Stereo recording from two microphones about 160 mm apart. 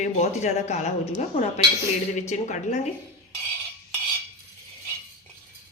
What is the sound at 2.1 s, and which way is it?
Speech, 50° left (ahead or behind).